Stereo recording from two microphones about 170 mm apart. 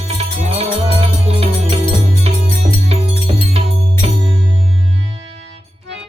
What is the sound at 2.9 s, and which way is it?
Music, 35° right (ahead or behind).